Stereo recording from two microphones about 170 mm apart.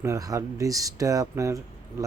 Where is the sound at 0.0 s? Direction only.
20° right (ahead or behind).